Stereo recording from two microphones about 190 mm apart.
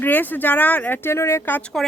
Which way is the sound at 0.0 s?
10° left (ahead or behind).